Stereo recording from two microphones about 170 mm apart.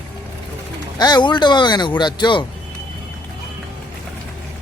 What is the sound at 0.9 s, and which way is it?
Speech, 25° left (ahead or behind).